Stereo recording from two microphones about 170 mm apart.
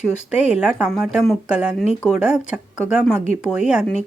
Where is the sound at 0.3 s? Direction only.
5° right (ahead or behind).